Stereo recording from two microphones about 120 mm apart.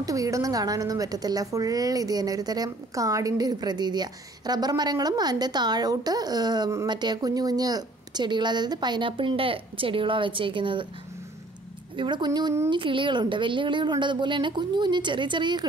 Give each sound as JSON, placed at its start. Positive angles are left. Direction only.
{"t": 0.0, "sound": "speech", "side_deg": -30}
{"t": 12.0, "sound": "speech", "side_deg": -40}